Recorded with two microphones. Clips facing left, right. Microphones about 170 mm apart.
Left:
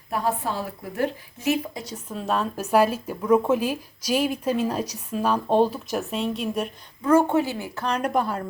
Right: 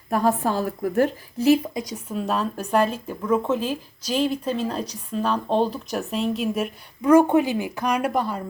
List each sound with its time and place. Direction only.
0.1 s a woman's voice: 45° right (ahead or behind)
1.7 s speech: 10° right (ahead or behind)
8.1 s speech: centre (ahead or behind)